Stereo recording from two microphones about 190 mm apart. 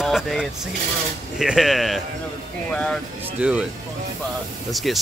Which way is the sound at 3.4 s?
5° right (ahead or behind).